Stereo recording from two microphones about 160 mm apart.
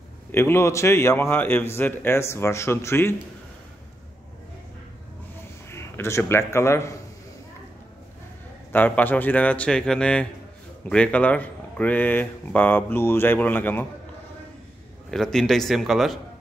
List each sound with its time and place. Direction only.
0.3 s speech: 15° left (ahead or behind)
5.7 s a man's voice: 15° left (ahead or behind)
8.7 s speech: 10° left (ahead or behind)
15.0 s a man's voice: centre (ahead or behind)